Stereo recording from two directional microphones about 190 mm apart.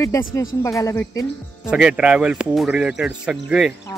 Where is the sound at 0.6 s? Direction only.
15° left (ahead or behind).